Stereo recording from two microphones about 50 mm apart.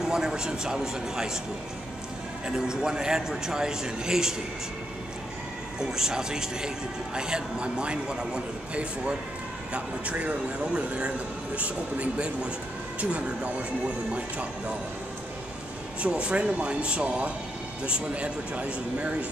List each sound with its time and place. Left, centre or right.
0.0 s a man's voice: centre
2.4 s a man's voice: centre
5.8 s a man's voice: centre; by 14.5 s right
16.0 s a man's voice: right